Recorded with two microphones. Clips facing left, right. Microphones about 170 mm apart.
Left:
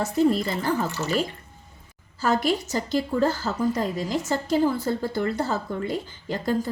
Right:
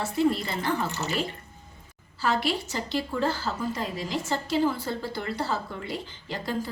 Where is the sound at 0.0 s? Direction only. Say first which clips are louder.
Left 4 dB; 40° left (ahead or behind).